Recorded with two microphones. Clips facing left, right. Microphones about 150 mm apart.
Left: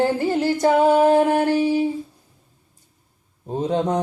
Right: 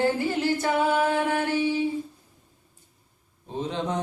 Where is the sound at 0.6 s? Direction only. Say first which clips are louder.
Left 10 dB; 40° left (ahead or behind).